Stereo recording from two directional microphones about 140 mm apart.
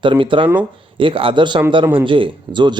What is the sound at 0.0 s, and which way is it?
Speech, 35° right (ahead or behind).